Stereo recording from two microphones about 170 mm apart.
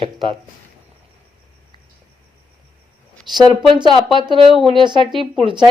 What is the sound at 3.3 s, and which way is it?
Speech, 25° right (ahead or behind).